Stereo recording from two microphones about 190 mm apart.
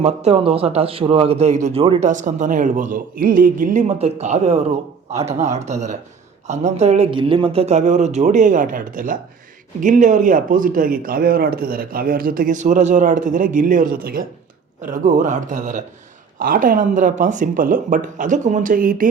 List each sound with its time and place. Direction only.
0.0 s a man's voice: 35° right (ahead or behind)